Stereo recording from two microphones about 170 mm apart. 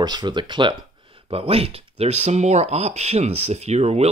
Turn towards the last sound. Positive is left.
turn(degrees=-40)  # may be behind; listen again after turning